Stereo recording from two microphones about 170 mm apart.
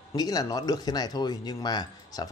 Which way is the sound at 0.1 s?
20° left (ahead or behind).